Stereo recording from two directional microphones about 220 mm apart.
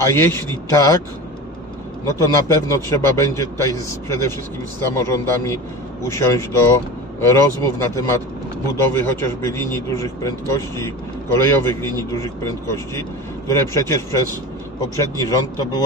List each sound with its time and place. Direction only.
0.0 s a man's voice: 10° left (ahead or behind)
2.0 s a man's voice: 15° left (ahead or behind)
15.1 s a man's voice: 15° left (ahead or behind)